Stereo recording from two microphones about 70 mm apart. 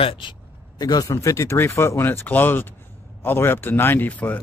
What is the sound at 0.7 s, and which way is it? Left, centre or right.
Speech, left.